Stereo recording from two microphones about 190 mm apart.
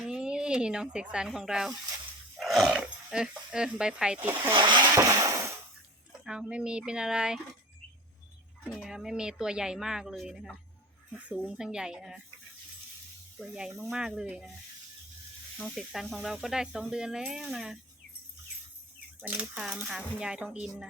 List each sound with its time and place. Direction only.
0.0 s a sound: 5° right (ahead or behind)
1.1 s speech: 5° right (ahead or behind)
4.5 s a sound: 25° right (ahead or behind)
6.2 s speech: 5° right (ahead or behind)
8.7 s speech: centre (ahead or behind)
13.4 s speech: 5° right (ahead or behind)
15.5 s speech: centre (ahead or behind)
19.2 s speech: 10° right (ahead or behind)